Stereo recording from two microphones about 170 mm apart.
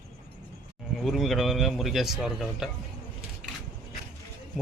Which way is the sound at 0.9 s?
Centre (ahead or behind).